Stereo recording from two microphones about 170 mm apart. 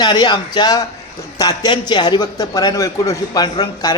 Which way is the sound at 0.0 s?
25° left (ahead or behind).